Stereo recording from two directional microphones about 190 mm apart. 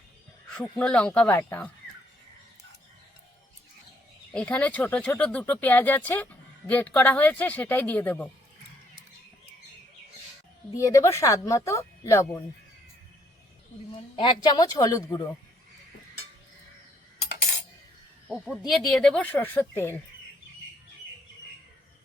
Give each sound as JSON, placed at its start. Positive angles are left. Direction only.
{"t": 0.8, "sound": "speech", "side_deg": 5}
{"t": 4.4, "sound": "speech", "side_deg": 5}
{"t": 10.8, "sound": "speech", "side_deg": 15}
{"t": 13.9, "sound": "a woman's voice", "side_deg": 25}
{"t": 18.3, "sound": "speech", "side_deg": -5}